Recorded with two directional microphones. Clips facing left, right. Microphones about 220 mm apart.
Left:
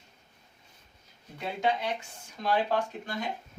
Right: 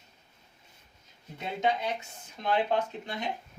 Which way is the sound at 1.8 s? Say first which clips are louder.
Even; 20° right (ahead or behind).